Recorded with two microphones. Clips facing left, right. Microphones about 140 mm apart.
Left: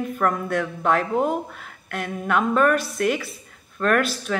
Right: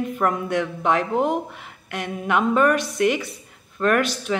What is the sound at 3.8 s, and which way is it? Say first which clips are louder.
Speech: right 1 dB; 20° right (ahead or behind).